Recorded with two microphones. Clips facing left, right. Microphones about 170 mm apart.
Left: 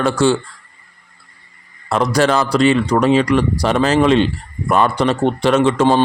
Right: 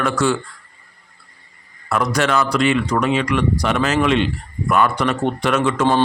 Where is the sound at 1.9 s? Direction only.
30° left (ahead or behind).